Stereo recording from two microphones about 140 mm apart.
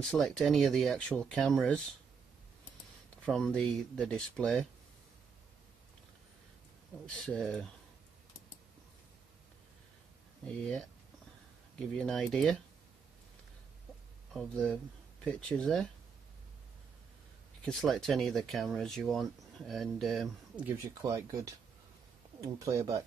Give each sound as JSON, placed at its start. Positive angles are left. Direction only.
{"t": 0.1, "sound": "speech", "side_deg": 0}
{"t": 3.3, "sound": "speech", "side_deg": 0}
{"t": 7.1, "sound": "speech", "side_deg": 5}
{"t": 12.0, "sound": "speech", "side_deg": 5}
{"t": 14.3, "sound": "speech", "side_deg": 5}
{"t": 17.6, "sound": "speech", "side_deg": 0}
{"t": 20.5, "sound": "speech", "side_deg": -20}